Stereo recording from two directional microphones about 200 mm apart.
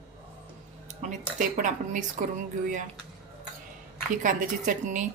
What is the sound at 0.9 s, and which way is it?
Speech, 35° right (ahead or behind).